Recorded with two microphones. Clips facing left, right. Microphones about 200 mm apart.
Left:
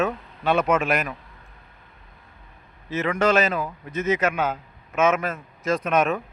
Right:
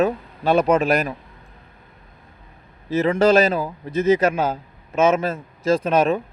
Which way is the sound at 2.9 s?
35° right (ahead or behind).